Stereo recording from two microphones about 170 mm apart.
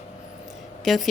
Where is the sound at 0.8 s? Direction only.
Centre (ahead or behind).